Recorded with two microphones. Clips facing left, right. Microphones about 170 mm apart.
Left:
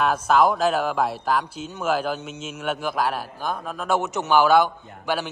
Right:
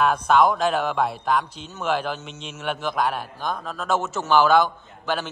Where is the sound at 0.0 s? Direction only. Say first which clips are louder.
Right 1 dB; 5° left (ahead or behind).